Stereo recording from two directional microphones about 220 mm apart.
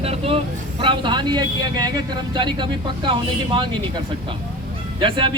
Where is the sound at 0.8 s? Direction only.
20° right (ahead or behind).